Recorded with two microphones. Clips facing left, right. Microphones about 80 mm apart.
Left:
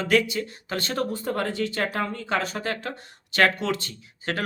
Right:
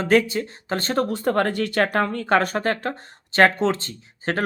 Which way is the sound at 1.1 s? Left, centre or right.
Right.